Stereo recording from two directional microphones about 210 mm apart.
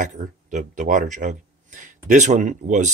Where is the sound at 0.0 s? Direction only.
35° right (ahead or behind).